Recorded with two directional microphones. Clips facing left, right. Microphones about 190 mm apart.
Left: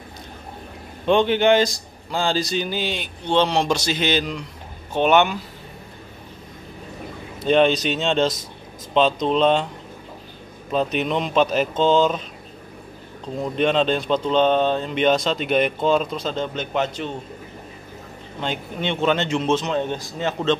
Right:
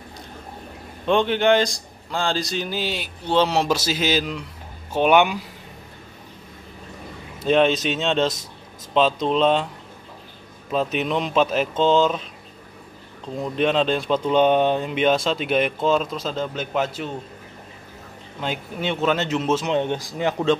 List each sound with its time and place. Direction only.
1.0 s a man's voice: centre (ahead or behind)
7.4 s speech: centre (ahead or behind)
10.7 s speech: centre (ahead or behind)
18.4 s speech: 5° right (ahead or behind)
19.7 s a man's voice: 20° right (ahead or behind)